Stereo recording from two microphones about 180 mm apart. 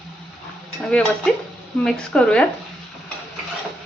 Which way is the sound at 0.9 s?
5° left (ahead or behind).